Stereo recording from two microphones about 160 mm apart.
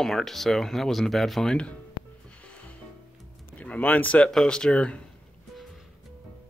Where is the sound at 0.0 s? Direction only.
Centre (ahead or behind).